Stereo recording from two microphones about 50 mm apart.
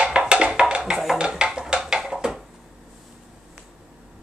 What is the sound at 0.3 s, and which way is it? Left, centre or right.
Music, centre.